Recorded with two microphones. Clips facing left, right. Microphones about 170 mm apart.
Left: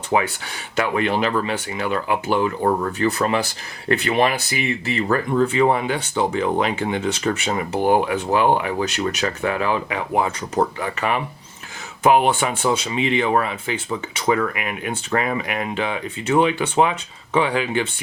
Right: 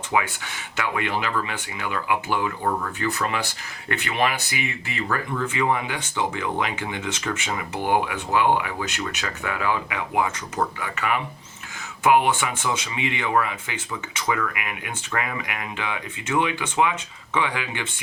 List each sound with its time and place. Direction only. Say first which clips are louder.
0.1 s speech: left 4 dB; 35° left (ahead or behind)